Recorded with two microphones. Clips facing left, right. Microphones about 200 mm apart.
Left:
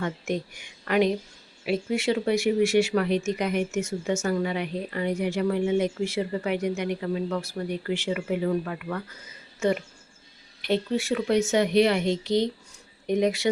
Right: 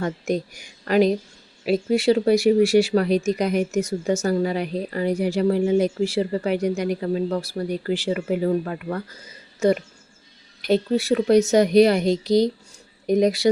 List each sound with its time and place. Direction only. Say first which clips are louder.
0.0 s speech: right 5 dB; 35° right (ahead or behind)